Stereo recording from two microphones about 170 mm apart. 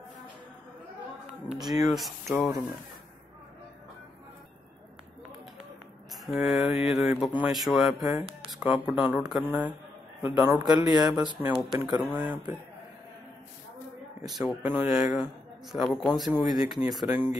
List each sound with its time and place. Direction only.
1.6 s speech: centre (ahead or behind)
6.2 s speech: 5° right (ahead or behind)
8.0 s speech: 20° right (ahead or behind)
8.5 s speech: 5° right (ahead or behind)
10.6 s speech: 25° right (ahead or behind)
11.3 s speech: 10° right (ahead or behind)
14.2 s speech: centre (ahead or behind)